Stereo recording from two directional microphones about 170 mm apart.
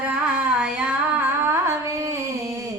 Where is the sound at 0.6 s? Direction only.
5° right (ahead or behind).